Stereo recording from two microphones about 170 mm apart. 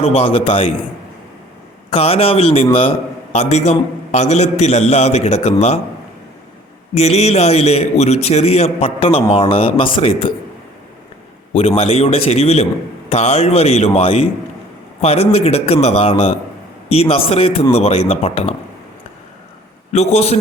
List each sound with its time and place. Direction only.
0.0 s a man's voice: 35° left (ahead or behind)
1.9 s a man's voice: 35° left (ahead or behind)
6.9 s a man's voice: 40° left (ahead or behind)
11.5 s a man's voice: 35° left (ahead or behind)
19.9 s a man's voice: 40° left (ahead or behind)